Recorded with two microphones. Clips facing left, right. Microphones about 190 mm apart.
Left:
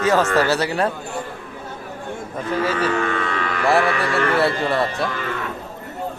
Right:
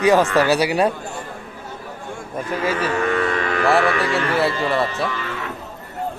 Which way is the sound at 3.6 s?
Centre (ahead or behind).